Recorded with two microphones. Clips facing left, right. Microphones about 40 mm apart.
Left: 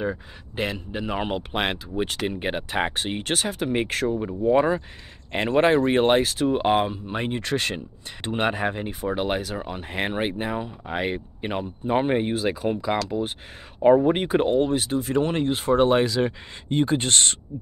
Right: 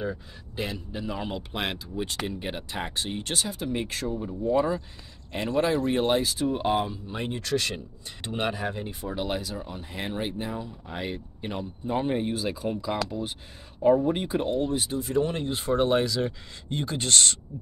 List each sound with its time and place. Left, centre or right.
0.0 s speech: left
14.8 s speech: left